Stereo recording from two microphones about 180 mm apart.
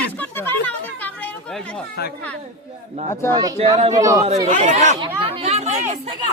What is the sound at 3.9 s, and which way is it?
Speech, 20° right (ahead or behind).